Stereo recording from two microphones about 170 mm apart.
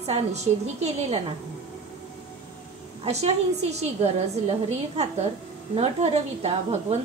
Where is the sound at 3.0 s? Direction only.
40° right (ahead or behind).